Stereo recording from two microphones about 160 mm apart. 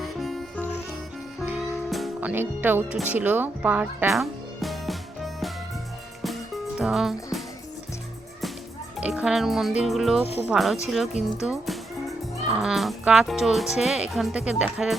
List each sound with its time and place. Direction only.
0.0 s music: centre (ahead or behind)
2.3 s speech: 10° right (ahead or behind)
6.2 s music: centre (ahead or behind)
9.0 s speech: 5° right (ahead or behind)
10.2 s speech: 40° left (ahead or behind)
10.5 s speech: centre (ahead or behind)
11.4 s music: centre (ahead or behind)
12.5 s speech: centre (ahead or behind)